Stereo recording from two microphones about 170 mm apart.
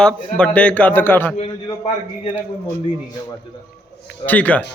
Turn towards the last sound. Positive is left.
turn(degrees=10)  # may be behind; listen again after turning